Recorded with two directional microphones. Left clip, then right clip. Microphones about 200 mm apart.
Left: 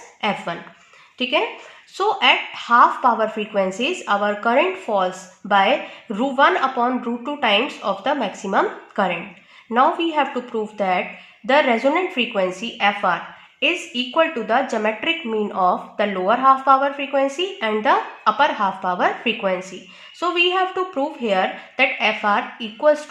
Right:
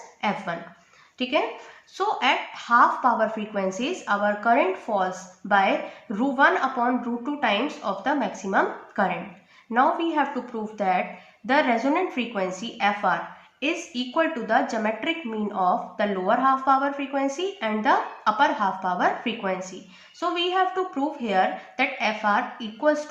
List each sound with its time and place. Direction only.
0.2 s speech: 50° left (ahead or behind)